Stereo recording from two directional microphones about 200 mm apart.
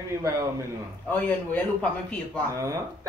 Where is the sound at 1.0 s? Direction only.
10° left (ahead or behind).